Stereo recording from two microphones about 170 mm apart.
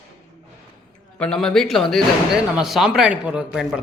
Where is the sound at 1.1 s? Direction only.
5° left (ahead or behind).